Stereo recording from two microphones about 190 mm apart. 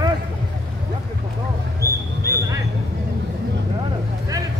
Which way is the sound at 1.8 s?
15° right (ahead or behind).